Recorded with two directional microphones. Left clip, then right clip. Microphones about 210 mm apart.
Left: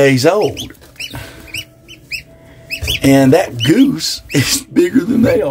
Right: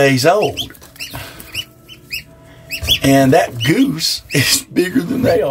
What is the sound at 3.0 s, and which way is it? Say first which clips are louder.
Speech: left 2 dB; 15° left (ahead or behind).